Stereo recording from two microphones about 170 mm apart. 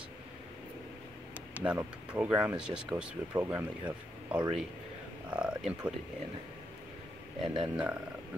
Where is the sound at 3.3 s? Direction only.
20° right (ahead or behind).